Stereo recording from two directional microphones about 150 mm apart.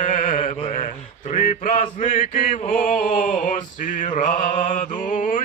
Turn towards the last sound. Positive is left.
turn(degrees=60)  # may be behind; listen again after turning